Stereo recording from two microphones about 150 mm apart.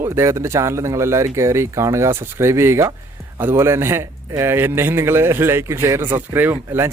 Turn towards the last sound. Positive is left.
turn(degrees=-15)  # may be behind; listen again after turning